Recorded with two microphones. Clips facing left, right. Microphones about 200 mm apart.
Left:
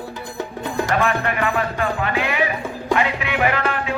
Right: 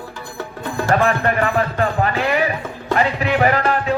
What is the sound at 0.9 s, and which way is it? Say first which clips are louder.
Music: right 5 dB; 35° right (ahead or behind).